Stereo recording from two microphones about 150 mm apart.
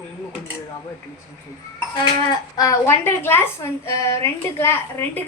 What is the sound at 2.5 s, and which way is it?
A woman's voice, 25° left (ahead or behind).